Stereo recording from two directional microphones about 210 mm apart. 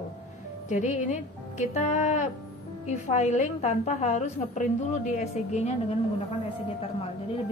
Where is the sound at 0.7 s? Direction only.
35° left (ahead or behind).